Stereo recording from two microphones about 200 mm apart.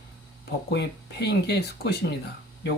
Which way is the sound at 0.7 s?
55° left (ahead or behind).